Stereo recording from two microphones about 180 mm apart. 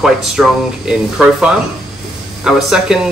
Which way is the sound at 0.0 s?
Centre (ahead or behind).